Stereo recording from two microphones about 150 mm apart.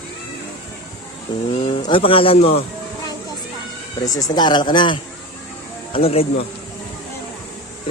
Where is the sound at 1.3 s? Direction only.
30° left (ahead or behind).